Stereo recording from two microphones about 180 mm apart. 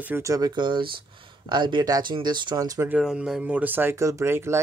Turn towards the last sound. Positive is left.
turn(degrees=-15)  # may be behind; listen again after turning